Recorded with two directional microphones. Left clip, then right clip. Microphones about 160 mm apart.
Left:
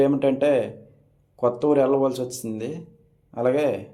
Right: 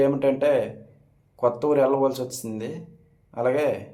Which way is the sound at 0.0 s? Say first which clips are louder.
Left 1 dB; 20° left (ahead or behind).